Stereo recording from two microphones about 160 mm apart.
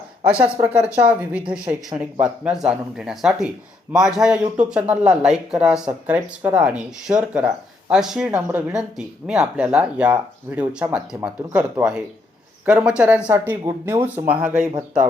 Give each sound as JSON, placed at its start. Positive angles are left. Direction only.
{"t": 0.3, "sound": "speech", "side_deg": -5}